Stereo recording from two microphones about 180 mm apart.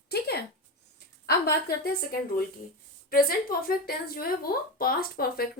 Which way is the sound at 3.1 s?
55° left (ahead or behind).